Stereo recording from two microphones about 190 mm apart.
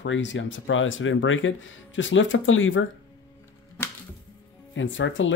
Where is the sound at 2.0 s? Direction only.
75° left (ahead or behind).